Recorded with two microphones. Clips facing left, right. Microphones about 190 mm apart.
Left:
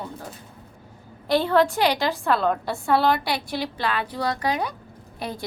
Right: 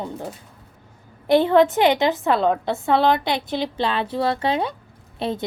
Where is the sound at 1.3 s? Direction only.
20° right (ahead or behind).